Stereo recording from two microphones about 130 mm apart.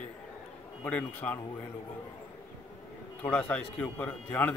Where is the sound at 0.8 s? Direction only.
10° left (ahead or behind).